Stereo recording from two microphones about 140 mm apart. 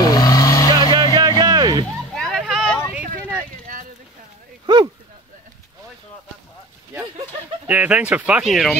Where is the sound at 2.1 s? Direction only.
Centre (ahead or behind).